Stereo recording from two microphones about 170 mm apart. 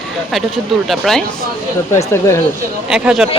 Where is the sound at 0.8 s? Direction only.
Centre (ahead or behind).